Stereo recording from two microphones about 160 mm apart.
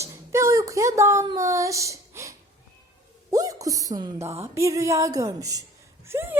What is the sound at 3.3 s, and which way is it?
Speech, 20° right (ahead or behind).